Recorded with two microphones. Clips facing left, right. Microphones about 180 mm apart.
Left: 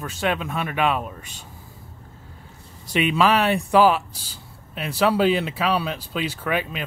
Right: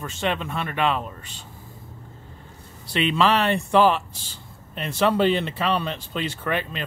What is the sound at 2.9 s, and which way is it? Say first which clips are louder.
Speech: left 1 dB; 10° left (ahead or behind).